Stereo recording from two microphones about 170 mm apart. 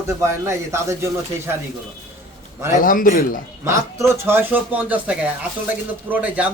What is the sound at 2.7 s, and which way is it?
Speech, 50° left (ahead or behind).